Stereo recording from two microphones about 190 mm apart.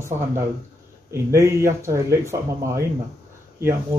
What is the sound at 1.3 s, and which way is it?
Speech, 15° right (ahead or behind).